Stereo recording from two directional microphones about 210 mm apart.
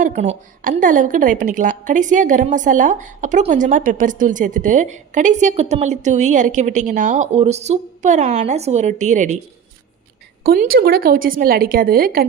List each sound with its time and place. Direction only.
0.0 s a sound: 35° right (ahead or behind)
0.6 s a woman's voice: 40° right (ahead or behind)
10.4 s a woman's voice: 45° right (ahead or behind)